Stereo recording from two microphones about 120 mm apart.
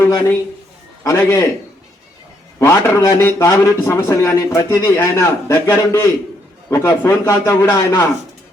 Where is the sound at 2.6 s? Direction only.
25° left (ahead or behind).